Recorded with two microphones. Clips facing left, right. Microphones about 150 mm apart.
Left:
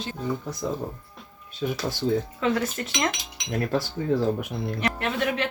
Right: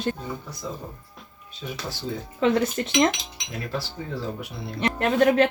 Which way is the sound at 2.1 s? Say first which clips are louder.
Left 8 dB; 55° left (ahead or behind).